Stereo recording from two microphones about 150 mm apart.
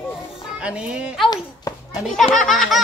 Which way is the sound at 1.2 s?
25° left (ahead or behind).